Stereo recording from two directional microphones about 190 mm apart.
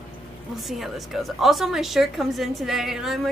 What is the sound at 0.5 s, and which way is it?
A woman's voice, centre (ahead or behind).